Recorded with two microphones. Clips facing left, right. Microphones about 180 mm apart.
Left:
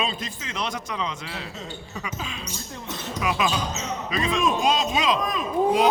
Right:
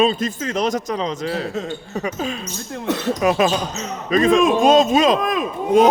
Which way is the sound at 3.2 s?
45° right (ahead or behind).